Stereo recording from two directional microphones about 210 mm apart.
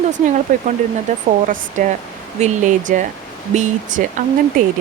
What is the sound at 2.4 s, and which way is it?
Speech, 35° right (ahead or behind).